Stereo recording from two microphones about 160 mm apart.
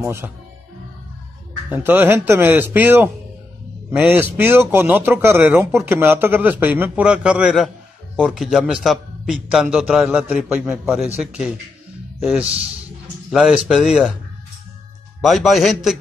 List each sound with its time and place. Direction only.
0.0 s a man's voice: 15° right (ahead or behind)
1.7 s a man's voice: 10° right (ahead or behind)
12.2 s a man's voice: 5° right (ahead or behind)
15.2 s a man's voice: centre (ahead or behind)